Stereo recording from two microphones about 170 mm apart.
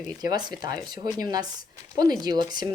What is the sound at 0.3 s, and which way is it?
Speech, 25° right (ahead or behind).